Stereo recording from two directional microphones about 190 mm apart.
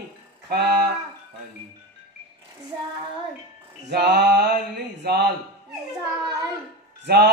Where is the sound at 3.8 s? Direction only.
60° right (ahead or behind).